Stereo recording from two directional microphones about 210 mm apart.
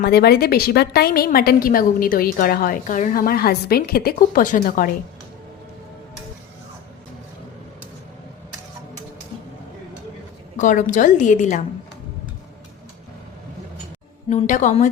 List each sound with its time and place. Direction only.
0.0 s a woman's voice: 50° left (ahead or behind)
10.6 s a woman's voice: 35° left (ahead or behind)
14.3 s a woman's voice: 35° left (ahead or behind)